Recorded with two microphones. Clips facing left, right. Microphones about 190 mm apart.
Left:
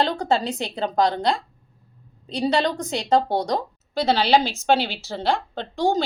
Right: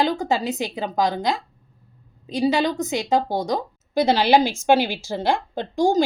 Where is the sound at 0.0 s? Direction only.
5° right (ahead or behind).